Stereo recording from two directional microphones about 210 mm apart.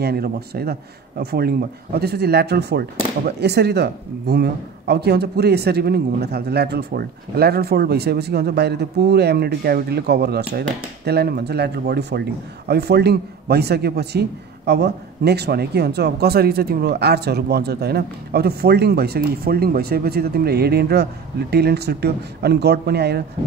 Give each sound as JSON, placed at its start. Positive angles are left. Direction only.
{"t": 0.0, "sound": "speech", "side_deg": -50}